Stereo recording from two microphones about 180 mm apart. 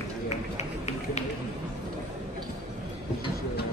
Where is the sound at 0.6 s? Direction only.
35° left (ahead or behind).